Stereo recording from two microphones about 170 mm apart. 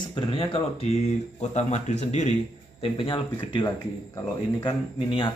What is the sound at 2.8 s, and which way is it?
Speech, 30° left (ahead or behind).